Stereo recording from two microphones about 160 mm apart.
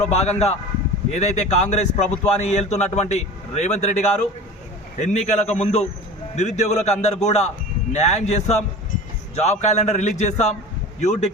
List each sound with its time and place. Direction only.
0.1 s a man's voice: 45° left (ahead or behind)